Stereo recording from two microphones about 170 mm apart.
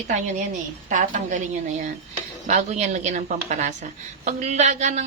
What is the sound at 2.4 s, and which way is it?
A woman's voice, 40° right (ahead or behind).